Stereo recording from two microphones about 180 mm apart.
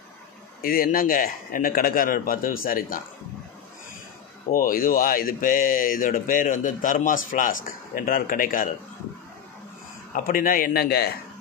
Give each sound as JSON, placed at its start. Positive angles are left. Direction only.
{"t": 0.6, "sound": "speech", "side_deg": 55}
{"t": 4.5, "sound": "speech", "side_deg": 50}
{"t": 10.1, "sound": "speech", "side_deg": 50}